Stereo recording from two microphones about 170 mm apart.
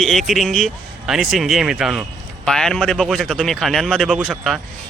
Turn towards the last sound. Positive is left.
turn(degrees=0)  # may be behind; listen again after turning